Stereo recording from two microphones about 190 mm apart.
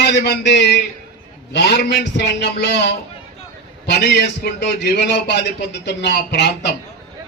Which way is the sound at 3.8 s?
60° left (ahead or behind).